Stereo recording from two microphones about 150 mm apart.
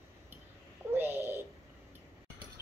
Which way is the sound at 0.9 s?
15° right (ahead or behind).